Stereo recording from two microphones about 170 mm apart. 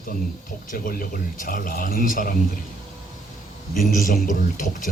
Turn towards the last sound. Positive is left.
turn(degrees=50)  # may be behind; listen again after turning